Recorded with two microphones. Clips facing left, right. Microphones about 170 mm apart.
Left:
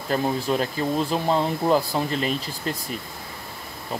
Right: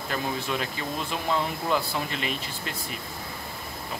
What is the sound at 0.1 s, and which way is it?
Speech, 40° left (ahead or behind).